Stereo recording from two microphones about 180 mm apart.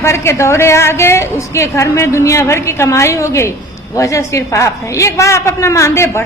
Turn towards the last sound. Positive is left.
turn(degrees=15)  # may be behind; listen again after turning